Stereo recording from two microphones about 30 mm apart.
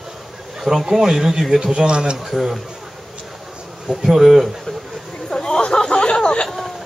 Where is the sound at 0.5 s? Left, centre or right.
Centre.